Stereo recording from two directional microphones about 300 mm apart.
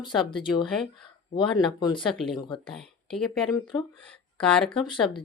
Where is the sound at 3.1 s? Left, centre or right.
Centre.